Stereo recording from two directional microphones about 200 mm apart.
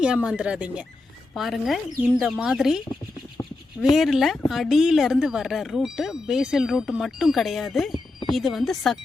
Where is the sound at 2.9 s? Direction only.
25° left (ahead or behind).